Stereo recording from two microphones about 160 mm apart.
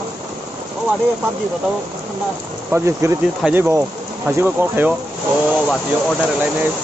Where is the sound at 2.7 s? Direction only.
15° right (ahead or behind).